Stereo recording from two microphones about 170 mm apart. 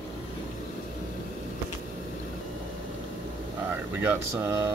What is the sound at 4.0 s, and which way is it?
Speech, 10° right (ahead or behind).